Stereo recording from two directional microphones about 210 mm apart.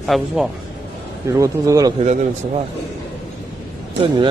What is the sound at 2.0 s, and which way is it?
Speech, 35° right (ahead or behind).